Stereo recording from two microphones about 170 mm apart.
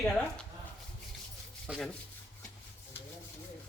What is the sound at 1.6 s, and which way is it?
Rub, centre (ahead or behind).